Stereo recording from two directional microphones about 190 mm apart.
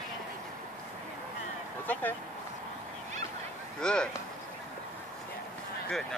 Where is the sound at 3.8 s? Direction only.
5° left (ahead or behind).